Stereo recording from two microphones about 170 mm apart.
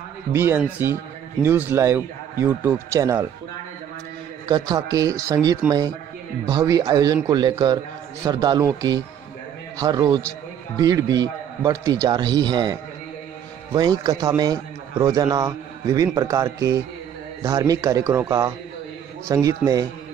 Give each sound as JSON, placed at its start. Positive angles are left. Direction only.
{"t": 0.3, "sound": "a man's voice", "side_deg": -15}
{"t": 4.5, "sound": "a man's voice", "side_deg": -20}